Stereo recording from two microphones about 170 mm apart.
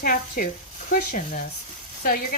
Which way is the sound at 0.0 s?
55° left (ahead or behind).